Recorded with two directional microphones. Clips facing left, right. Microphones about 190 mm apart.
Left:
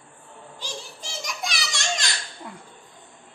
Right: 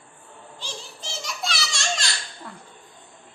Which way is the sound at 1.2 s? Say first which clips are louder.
Right 1 dB; 15° left (ahead or behind).